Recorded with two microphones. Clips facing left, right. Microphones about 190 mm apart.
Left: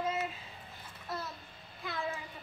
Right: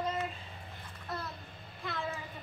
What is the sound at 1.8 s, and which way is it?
Speech, centre (ahead or behind).